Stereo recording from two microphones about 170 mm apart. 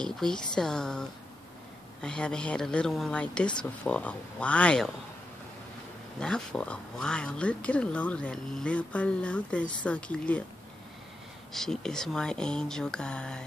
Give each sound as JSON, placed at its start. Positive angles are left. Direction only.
{"t": 0.0, "sound": "speech", "side_deg": 5}
{"t": 6.1, "sound": "speech", "side_deg": 5}
{"t": 11.5, "sound": "speech", "side_deg": 5}